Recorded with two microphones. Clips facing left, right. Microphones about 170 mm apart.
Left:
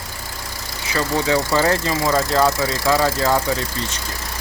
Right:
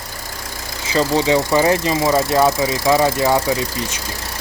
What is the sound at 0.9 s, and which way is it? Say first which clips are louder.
Speech: right 4 dB; 20° right (ahead or behind).